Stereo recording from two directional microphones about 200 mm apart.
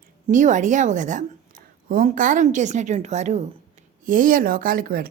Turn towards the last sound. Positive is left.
turn(degrees=-45)  # may be behind; listen again after turning